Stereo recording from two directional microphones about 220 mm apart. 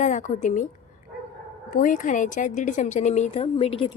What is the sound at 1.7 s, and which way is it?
A woman's voice, 35° left (ahead or behind).